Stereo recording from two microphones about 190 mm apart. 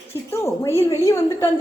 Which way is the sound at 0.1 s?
15° left (ahead or behind).